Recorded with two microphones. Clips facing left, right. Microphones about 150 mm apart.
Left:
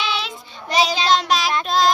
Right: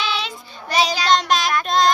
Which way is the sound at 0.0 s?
Centre (ahead or behind).